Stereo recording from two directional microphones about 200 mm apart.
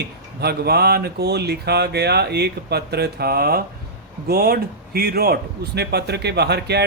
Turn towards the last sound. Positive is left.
turn(degrees=-55)  # may be behind; listen again after turning